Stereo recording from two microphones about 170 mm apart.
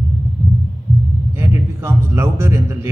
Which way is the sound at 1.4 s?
15° right (ahead or behind).